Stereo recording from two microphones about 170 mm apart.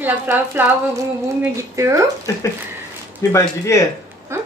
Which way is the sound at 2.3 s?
20° left (ahead or behind).